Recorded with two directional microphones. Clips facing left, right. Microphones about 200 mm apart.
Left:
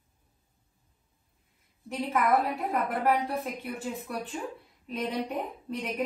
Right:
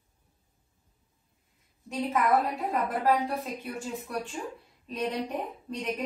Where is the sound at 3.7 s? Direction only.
55° left (ahead or behind).